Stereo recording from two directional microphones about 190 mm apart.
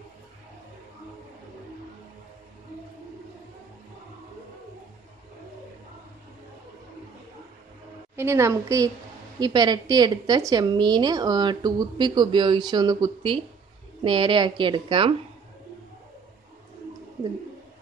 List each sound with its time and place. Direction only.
8.2 s a woman's voice: 15° right (ahead or behind)